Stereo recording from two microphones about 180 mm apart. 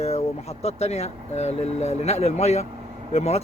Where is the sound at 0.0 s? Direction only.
35° left (ahead or behind).